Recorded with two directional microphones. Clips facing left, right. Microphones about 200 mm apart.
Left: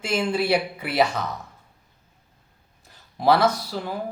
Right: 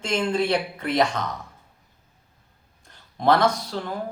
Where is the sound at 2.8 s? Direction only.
5° left (ahead or behind).